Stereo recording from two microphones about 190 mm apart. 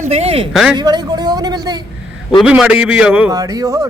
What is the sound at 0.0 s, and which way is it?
Speech, 35° right (ahead or behind).